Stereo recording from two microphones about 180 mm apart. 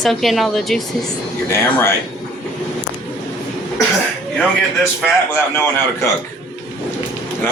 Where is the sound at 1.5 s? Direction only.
15° left (ahead or behind).